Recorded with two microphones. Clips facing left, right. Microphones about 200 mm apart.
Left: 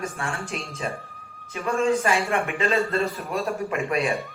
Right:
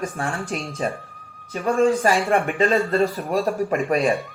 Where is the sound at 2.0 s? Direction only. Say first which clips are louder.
Right 4 dB; 40° right (ahead or behind).